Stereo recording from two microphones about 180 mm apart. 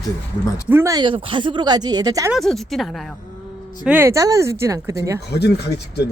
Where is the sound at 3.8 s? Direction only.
10° right (ahead or behind).